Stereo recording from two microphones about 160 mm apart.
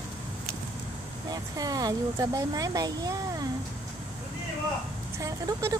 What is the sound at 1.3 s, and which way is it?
Speech, 25° right (ahead or behind).